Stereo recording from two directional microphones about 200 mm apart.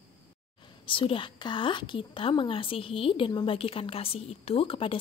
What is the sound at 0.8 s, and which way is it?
A woman's voice, 25° left (ahead or behind).